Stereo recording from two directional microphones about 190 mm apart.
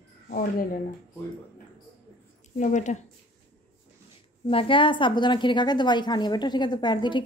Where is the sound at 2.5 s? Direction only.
40° left (ahead or behind).